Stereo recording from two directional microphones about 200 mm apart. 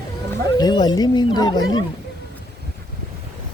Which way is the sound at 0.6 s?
20° left (ahead or behind).